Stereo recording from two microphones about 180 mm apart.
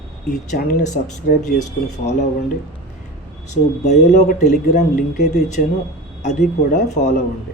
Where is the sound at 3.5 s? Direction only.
40° left (ahead or behind).